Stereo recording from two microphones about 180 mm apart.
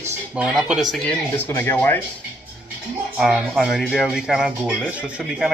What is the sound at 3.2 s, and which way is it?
Speech, centre (ahead or behind).